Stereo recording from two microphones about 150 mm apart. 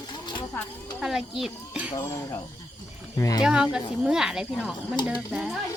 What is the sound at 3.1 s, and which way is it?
Speech, 20° left (ahead or behind).